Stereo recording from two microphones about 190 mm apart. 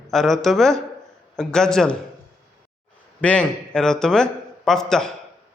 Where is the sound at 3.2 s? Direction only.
5° left (ahead or behind).